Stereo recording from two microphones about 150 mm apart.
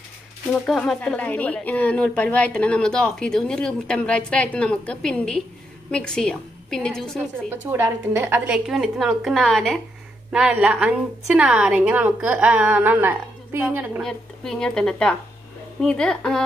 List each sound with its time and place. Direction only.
0.7 s a woman's voice: 5° left (ahead or behind)
7.7 s a woman's voice: 15° right (ahead or behind)
14.0 s a woman's voice: 5° left (ahead or behind)